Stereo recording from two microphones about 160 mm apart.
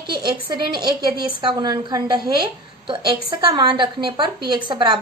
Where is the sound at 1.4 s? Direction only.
30° right (ahead or behind).